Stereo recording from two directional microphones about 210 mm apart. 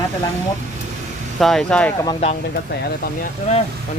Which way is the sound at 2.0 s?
30° left (ahead or behind).